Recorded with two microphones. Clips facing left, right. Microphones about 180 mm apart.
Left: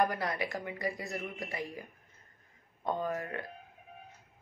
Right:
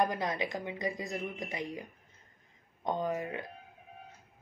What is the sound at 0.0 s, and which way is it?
Speech, 20° right (ahead or behind).